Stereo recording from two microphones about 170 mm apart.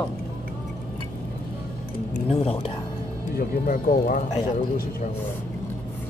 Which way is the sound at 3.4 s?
55° left (ahead or behind).